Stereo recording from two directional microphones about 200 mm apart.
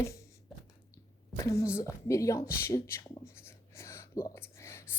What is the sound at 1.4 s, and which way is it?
Speech, 15° left (ahead or behind).